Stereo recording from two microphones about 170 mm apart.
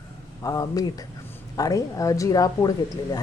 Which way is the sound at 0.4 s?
20° left (ahead or behind).